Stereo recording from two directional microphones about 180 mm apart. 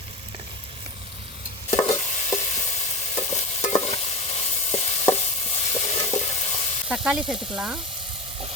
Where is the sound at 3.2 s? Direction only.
35° left (ahead or behind).